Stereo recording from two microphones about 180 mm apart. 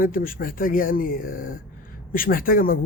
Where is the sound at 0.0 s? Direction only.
50° left (ahead or behind).